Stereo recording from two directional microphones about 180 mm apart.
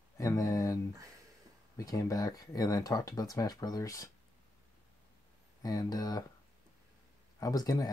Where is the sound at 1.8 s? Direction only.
20° left (ahead or behind).